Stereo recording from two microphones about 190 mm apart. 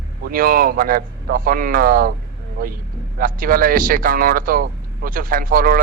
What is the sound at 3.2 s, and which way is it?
Speech, 50° right (ahead or behind).